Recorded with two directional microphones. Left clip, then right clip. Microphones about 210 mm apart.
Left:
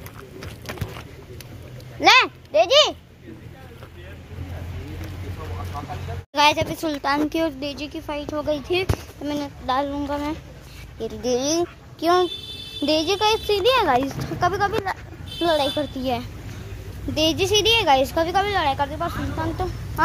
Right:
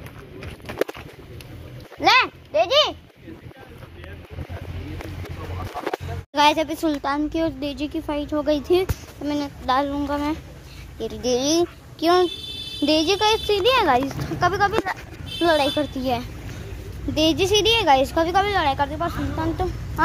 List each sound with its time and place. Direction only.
2.0 s a sound: 30° left (ahead or behind)
6.3 s a woman's voice: 5° right (ahead or behind)
7.2 s speech: 20° left (ahead or behind)
7.8 s speech: 10° right (ahead or behind)
9.2 s a woman's voice: centre (ahead or behind)